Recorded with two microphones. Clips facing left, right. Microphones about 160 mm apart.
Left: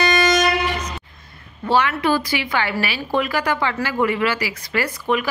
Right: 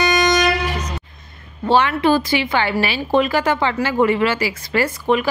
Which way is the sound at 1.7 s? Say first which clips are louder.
Right 3 dB; 25° right (ahead or behind).